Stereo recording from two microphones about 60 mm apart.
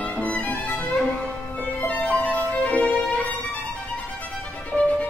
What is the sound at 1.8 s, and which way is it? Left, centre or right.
Violin, left.